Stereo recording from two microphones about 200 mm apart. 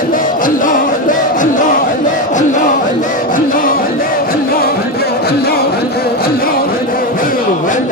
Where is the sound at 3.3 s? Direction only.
45° left (ahead or behind).